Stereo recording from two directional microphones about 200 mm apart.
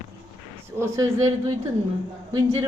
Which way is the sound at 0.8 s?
15° right (ahead or behind).